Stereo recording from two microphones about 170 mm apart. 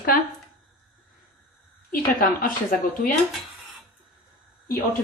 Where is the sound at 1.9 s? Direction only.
55° left (ahead or behind).